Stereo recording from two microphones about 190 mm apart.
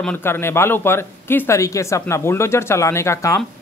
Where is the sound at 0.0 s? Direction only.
10° left (ahead or behind).